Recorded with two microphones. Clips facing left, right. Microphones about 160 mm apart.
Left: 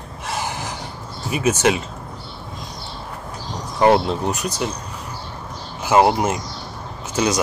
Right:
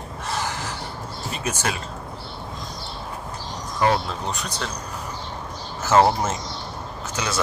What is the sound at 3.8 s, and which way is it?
Speech, 30° left (ahead or behind).